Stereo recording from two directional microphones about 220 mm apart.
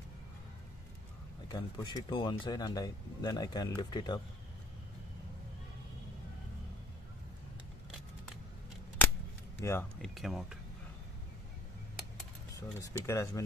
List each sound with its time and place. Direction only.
1.5 s speech: 20° left (ahead or behind)
9.6 s speech: 10° left (ahead or behind)
10.1 s speech: centre (ahead or behind)
12.5 s speech: 15° left (ahead or behind)